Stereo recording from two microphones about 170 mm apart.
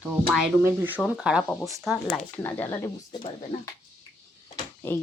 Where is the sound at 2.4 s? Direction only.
15° left (ahead or behind).